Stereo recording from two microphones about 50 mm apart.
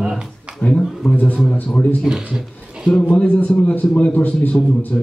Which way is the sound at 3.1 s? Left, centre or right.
Left.